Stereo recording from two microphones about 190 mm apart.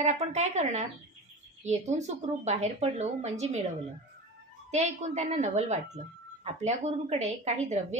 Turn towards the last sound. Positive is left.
turn(degrees=-35)  # may be behind; listen again after turning